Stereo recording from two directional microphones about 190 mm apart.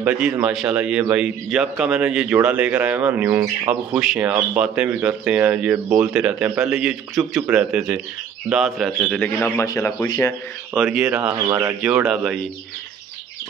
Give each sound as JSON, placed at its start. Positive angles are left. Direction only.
{"t": 0.0, "sound": "a man's voice", "side_deg": -5}
{"t": 4.0, "sound": "speech", "side_deg": 0}
{"t": 10.7, "sound": "a man's voice", "side_deg": -5}
{"t": 11.8, "sound": "speech", "side_deg": -5}